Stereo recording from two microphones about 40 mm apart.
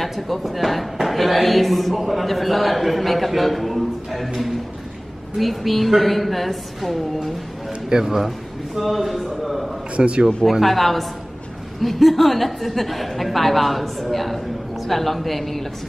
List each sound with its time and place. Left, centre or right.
0.0 s a man's voice: centre
7.9 s a man's voice: centre
9.9 s a man's voice: right
10.2 s a man's voice: centre